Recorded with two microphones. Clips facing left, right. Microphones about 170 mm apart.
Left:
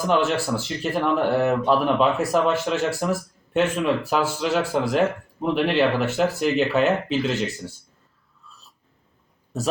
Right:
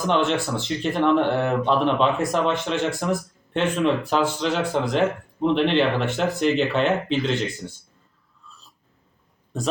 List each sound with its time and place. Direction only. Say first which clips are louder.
0.1 s speech: left 1 dB; 5° left (ahead or behind)